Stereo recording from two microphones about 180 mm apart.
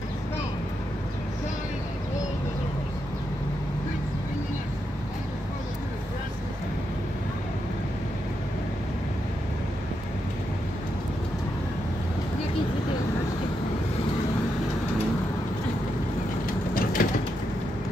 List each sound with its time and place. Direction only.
16.7 s vehicle: 50° left (ahead or behind)